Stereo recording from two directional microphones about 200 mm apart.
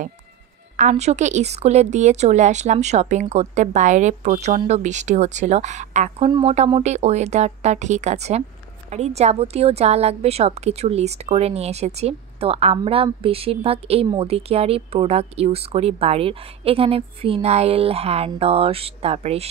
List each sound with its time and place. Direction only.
0.7 s a woman's voice: 35° right (ahead or behind)